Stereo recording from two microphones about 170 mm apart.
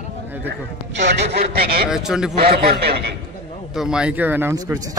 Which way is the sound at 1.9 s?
5° right (ahead or behind).